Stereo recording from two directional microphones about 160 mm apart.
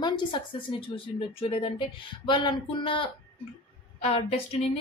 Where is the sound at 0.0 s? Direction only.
30° left (ahead or behind).